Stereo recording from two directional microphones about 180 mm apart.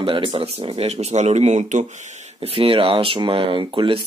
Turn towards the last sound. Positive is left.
turn(degrees=-30)  # may be behind; listen again after turning